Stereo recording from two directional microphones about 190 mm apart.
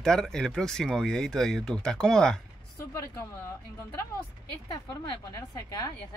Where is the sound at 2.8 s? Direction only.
15° left (ahead or behind).